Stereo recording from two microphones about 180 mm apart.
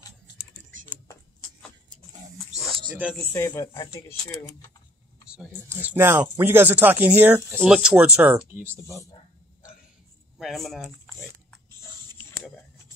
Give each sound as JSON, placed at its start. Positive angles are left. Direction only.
{"t": 2.7, "sound": "oink", "side_deg": -25}
{"t": 3.1, "sound": "speech", "side_deg": 15}
{"t": 5.7, "sound": "speech", "side_deg": -10}
{"t": 10.4, "sound": "speech", "side_deg": 0}